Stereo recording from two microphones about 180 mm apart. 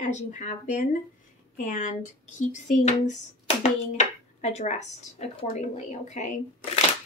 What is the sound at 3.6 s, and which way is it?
A woman's voice, 40° left (ahead or behind).